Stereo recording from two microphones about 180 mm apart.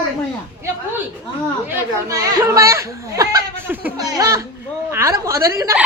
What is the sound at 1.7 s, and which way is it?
A woman's voice, 20° right (ahead or behind).